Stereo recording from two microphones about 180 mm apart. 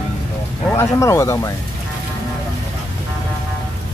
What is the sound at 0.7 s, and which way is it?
Speech, 15° left (ahead or behind).